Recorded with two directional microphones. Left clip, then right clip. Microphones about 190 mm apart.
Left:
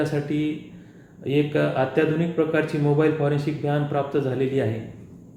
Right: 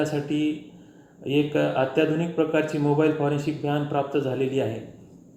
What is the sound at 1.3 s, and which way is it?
Speech, 5° right (ahead or behind).